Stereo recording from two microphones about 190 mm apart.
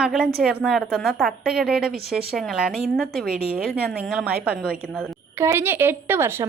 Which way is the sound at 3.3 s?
55° right (ahead or behind).